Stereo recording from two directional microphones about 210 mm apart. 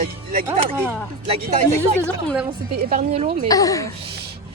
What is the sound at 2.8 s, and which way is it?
Speech, 45° right (ahead or behind).